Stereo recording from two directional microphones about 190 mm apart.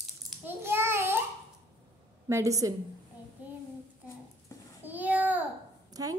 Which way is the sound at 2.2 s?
15° right (ahead or behind).